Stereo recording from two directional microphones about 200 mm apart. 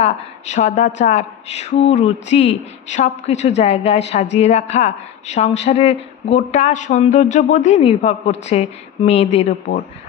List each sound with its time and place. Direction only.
0.0 s a woman's voice: 35° left (ahead or behind)